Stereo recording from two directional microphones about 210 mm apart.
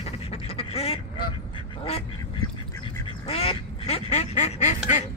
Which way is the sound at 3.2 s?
25° left (ahead or behind).